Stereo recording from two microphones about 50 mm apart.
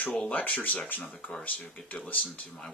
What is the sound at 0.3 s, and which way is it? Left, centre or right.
Speech, left.